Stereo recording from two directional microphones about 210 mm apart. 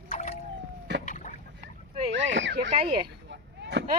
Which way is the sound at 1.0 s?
35° left (ahead or behind).